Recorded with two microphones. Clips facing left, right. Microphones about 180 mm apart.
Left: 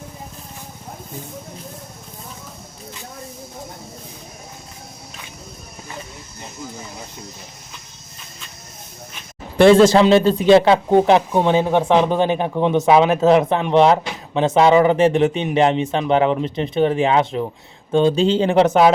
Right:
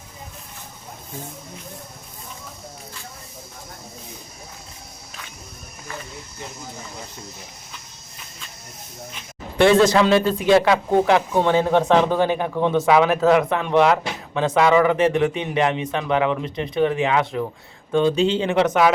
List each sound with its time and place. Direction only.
9.6 s speech: 30° left (ahead or behind)
11.3 s speech: 15° left (ahead or behind); by 18.9 s 30° left (ahead or behind)